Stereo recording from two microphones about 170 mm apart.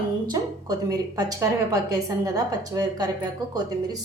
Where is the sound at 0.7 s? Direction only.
20° right (ahead or behind).